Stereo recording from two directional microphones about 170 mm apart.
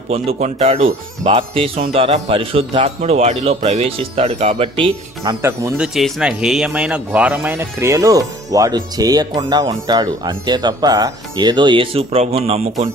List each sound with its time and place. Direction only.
0.1 s a man's voice: 40° right (ahead or behind)
5.2 s speech: 20° right (ahead or behind)
5.7 s speech: 5° right (ahead or behind); by 12.6 s 35° right (ahead or behind)